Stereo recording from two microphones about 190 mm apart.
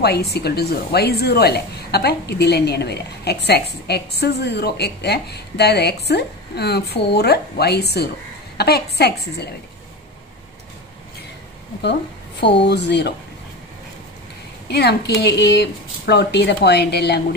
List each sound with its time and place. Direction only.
0.0 s a woman's voice: 60° left (ahead or behind)
11.8 s a woman's voice: 65° left (ahead or behind)
14.7 s a woman's voice: 60° left (ahead or behind)